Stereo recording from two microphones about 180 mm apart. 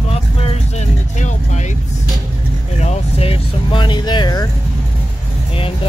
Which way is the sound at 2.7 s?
35° left (ahead or behind).